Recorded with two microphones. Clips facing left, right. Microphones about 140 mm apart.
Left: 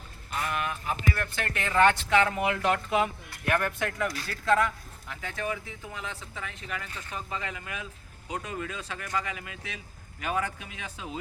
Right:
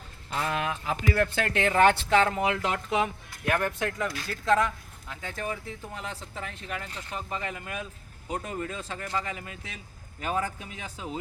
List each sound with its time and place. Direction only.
0.5 s speech: 90° right
1.7 s speech: 35° right (ahead or behind)